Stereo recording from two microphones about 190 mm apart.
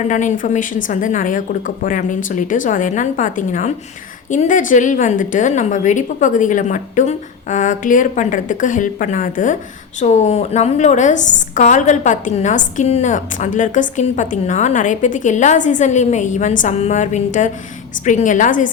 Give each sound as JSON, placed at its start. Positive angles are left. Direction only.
{"t": 0.1, "sound": "a woman's voice", "side_deg": 40}